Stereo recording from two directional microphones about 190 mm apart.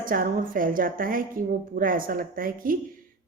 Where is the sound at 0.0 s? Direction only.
45° right (ahead or behind).